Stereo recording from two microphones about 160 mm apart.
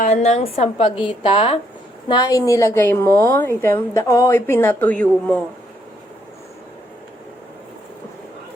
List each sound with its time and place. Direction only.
0.0 s a woman's voice: 40° left (ahead or behind)
2.0 s a woman's voice: 25° left (ahead or behind); by 5.4 s 5° left (ahead or behind)